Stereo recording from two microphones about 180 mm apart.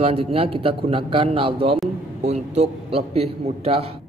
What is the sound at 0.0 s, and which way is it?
A man's voice, 30° right (ahead or behind).